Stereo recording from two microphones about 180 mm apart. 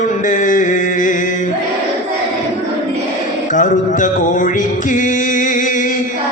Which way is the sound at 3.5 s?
45° left (ahead or behind).